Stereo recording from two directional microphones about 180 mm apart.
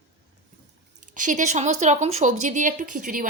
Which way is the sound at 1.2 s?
45° right (ahead or behind).